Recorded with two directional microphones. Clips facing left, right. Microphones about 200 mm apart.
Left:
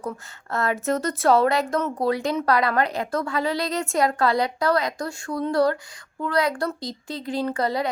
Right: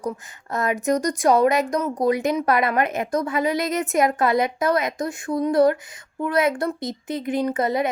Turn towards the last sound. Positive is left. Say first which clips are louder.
# right 3 dB
turn(degrees=-20)  # may be behind; listen again after turning